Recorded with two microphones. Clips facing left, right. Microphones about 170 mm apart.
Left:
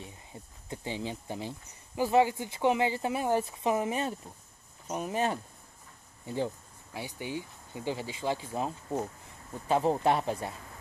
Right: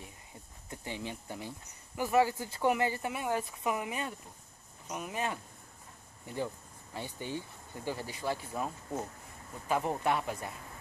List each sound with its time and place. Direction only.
0.0 s a sound: 25° left (ahead or behind)
2.0 s speech: 25° left (ahead or behind)
6.9 s speech: 10° left (ahead or behind); by 10.5 s 30° left (ahead or behind)